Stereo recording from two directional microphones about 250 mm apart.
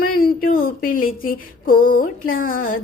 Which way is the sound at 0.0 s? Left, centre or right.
Left.